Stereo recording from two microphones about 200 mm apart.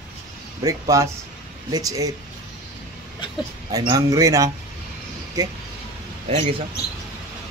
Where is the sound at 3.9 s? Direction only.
15° right (ahead or behind).